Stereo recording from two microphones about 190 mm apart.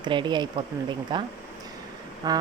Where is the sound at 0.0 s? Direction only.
25° right (ahead or behind).